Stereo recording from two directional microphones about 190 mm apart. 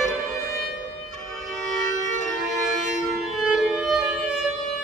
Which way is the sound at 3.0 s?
Centre (ahead or behind).